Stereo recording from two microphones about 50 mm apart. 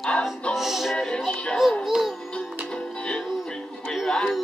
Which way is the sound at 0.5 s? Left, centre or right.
Centre.